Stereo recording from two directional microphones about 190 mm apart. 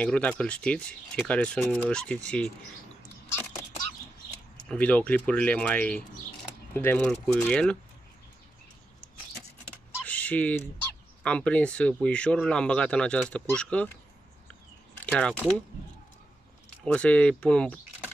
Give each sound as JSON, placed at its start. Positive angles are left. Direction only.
{"t": 0.0, "sound": "speech", "side_deg": 5}
{"t": 4.6, "sound": "speech", "side_deg": 5}
{"t": 9.7, "sound": "typing", "side_deg": 5}
{"t": 11.2, "sound": "speech", "side_deg": 5}
{"t": 15.0, "sound": "speech", "side_deg": 5}
{"t": 16.8, "sound": "speech", "side_deg": 5}